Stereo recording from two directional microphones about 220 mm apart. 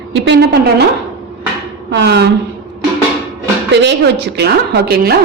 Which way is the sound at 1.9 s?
50° right (ahead or behind).